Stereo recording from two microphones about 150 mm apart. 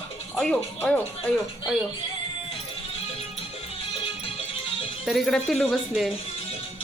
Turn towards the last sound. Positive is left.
turn(degrees=0)  # may be behind; listen again after turning